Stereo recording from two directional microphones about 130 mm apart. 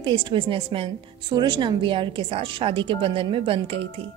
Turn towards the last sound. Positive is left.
turn(degrees=-45)  # may be behind; listen again after turning